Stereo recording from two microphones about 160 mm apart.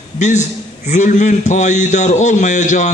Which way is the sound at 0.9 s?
50° left (ahead or behind).